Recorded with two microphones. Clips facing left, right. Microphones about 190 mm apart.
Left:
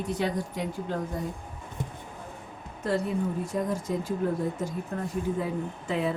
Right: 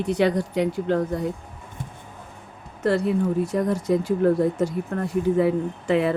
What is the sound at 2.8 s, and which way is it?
Speech, 70° right (ahead or behind).